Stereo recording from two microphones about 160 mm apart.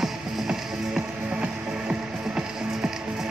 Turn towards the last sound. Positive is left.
turn(degrees=-5)  # may be behind; listen again after turning